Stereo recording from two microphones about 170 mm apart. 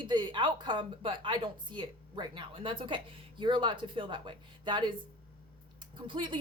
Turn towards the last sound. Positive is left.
turn(degrees=-30)  # may be behind; listen again after turning